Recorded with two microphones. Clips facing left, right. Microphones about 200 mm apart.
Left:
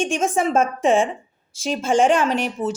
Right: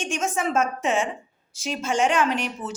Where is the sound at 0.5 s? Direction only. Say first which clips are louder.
Left 7 dB; 30° left (ahead or behind).